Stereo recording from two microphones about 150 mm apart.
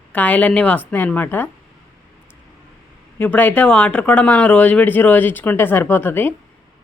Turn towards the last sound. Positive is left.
turn(degrees=15)  # may be behind; listen again after turning